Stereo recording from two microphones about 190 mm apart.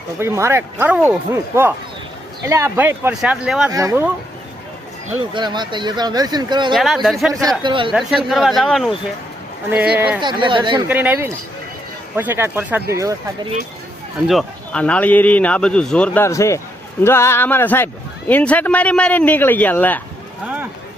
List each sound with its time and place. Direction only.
0.2 s speech: 15° right (ahead or behind)
3.7 s speech: 15° right (ahead or behind)
5.3 s speech: 25° right (ahead or behind)
6.7 s speech: centre (ahead or behind)
7.6 s speech: 25° right (ahead or behind)
7.9 s speech: centre (ahead or behind)
10.2 s speech: 25° right (ahead or behind)
10.8 s speech: 10° right (ahead or behind)
14.3 s speech: centre (ahead or behind)